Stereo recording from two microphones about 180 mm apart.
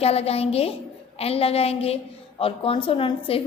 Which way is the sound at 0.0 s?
35° left (ahead or behind).